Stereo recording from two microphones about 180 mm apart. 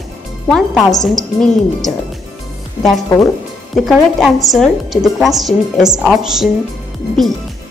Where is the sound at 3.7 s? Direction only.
Centre (ahead or behind).